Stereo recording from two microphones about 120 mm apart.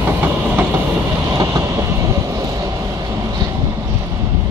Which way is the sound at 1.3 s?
25° right (ahead or behind).